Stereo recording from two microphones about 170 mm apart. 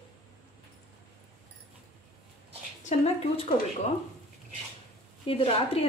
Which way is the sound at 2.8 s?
40° left (ahead or behind).